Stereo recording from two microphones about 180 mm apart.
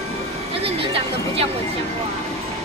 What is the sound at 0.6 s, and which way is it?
Speech, 30° right (ahead or behind).